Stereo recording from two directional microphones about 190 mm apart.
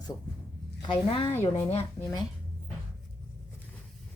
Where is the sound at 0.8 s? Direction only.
25° left (ahead or behind).